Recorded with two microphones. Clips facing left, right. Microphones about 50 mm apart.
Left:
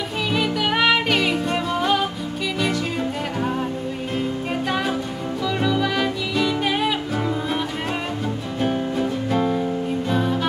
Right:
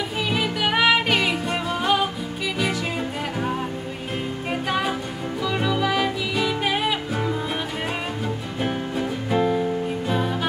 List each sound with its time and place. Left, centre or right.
0.3 s music: centre
4.6 s music: centre
8.5 s music: centre